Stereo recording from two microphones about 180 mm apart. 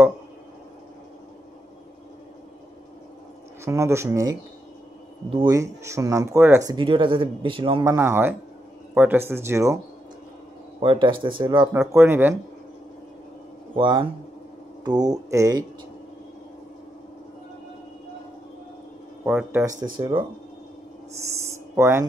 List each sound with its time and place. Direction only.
3.6 s speech: 15° right (ahead or behind)
7.8 s speech: 15° right (ahead or behind)
10.8 s speech: 30° right (ahead or behind)
11.7 s speech: 10° right (ahead or behind)
13.7 s speech: 25° right (ahead or behind)
19.2 s speech: 5° right (ahead or behind)
19.6 s speech: 20° right (ahead or behind)
21.7 s speech: 15° right (ahead or behind)